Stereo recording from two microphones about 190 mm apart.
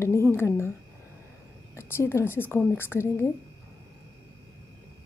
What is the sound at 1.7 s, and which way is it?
A woman's voice, 15° left (ahead or behind).